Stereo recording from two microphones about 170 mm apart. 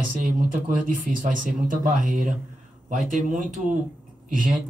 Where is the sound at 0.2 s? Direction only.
50° right (ahead or behind).